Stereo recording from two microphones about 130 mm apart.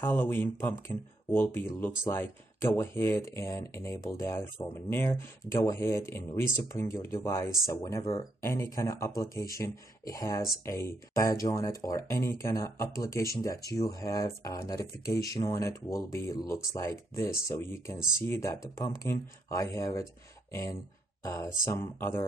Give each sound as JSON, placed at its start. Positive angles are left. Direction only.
{"t": 0.0, "sound": "speech", "side_deg": 15}
{"t": 21.2, "sound": "speech", "side_deg": 25}